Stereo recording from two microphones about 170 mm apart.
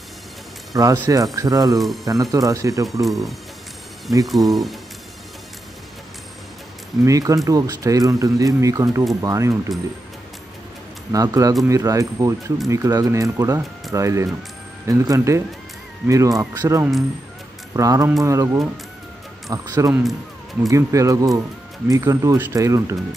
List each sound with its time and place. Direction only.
0.7 s speech: 20° right (ahead or behind)
3.1 s speech: centre (ahead or behind)
7.1 s speech: 20° right (ahead or behind)
11.1 s speech: 20° right (ahead or behind)
19.9 s speech: centre (ahead or behind)
20.7 s speech: 20° right (ahead or behind)